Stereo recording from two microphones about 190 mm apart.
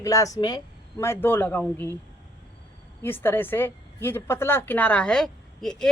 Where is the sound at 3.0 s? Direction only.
10° left (ahead or behind).